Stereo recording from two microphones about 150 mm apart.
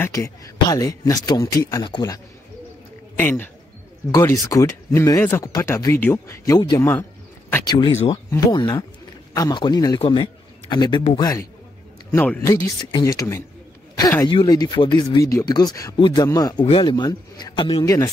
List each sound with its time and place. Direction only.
0.0 s speech: 20° left (ahead or behind)
3.2 s a man's voice: 15° left (ahead or behind)
12.1 s a man's voice: 15° left (ahead or behind); by 17.9 s 35° left (ahead or behind)